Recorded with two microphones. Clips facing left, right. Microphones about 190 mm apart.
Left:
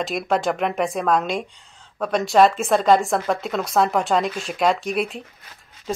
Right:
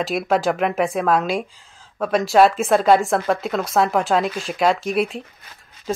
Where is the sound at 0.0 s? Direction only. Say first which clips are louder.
Right 2 dB; centre (ahead or behind).